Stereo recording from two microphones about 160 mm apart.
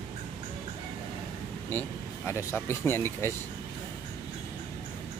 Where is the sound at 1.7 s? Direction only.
10° left (ahead or behind).